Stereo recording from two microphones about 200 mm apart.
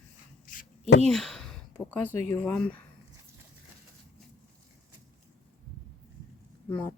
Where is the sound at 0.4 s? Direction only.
45° left (ahead or behind).